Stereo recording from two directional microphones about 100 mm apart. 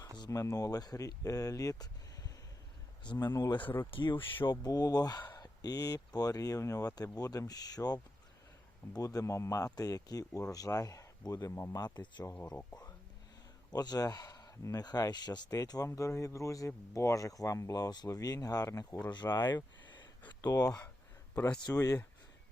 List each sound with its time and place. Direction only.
0.3 s speech: 35° left (ahead or behind)
3.9 s speech: 55° left (ahead or behind)
4.6 s speech: 40° left (ahead or behind)
13.7 s speech: 40° left (ahead or behind)
20.2 s speech: 40° left (ahead or behind)
21.3 s speech: 20° left (ahead or behind)
21.6 s speech: 35° left (ahead or behind)